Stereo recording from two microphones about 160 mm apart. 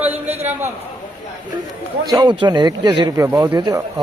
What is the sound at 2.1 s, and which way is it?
Speech, 30° right (ahead or behind).